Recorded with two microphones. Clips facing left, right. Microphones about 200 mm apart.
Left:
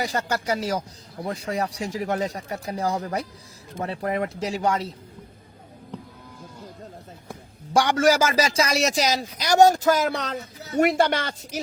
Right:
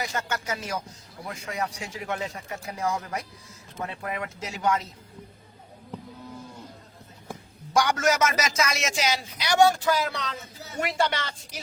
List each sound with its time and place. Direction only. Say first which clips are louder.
0.0 s speech: left 5 dB; 35° left (ahead or behind)
7.7 s speech: left 4 dB; 30° left (ahead or behind); by 10.3 s 45° left (ahead or behind)
10.3 s speech: left 7 dB; centre (ahead or behind)
10.8 s speech: left 7 dB; 50° left (ahead or behind)